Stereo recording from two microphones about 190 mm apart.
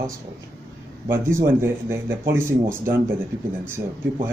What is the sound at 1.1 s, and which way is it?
Speech, 15° right (ahead or behind).